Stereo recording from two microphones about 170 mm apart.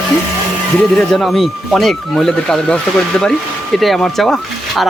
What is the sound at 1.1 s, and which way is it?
Speech, centre (ahead or behind).